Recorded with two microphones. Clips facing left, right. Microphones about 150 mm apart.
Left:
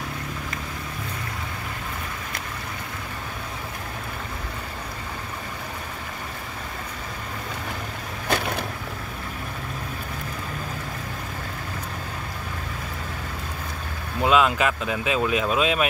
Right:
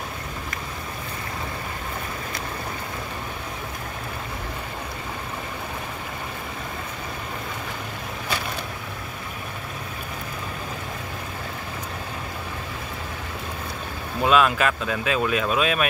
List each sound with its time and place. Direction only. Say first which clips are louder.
14.2 s speech: even; 20° left (ahead or behind)